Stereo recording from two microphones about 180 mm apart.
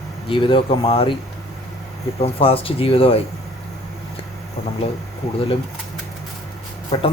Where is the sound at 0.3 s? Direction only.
30° left (ahead or behind).